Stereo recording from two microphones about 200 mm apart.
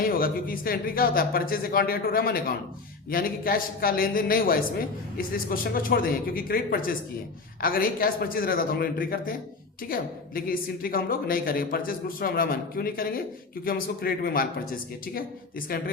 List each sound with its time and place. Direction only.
0.0 s a woman's voice: 45° left (ahead or behind)